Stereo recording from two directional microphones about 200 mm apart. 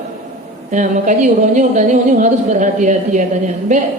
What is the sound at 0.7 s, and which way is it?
Speech, 40° right (ahead or behind).